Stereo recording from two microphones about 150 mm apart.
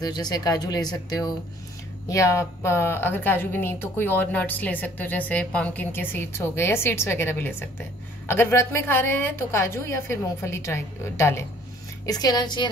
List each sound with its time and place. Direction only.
0.0 s a woman's voice: 25° left (ahead or behind)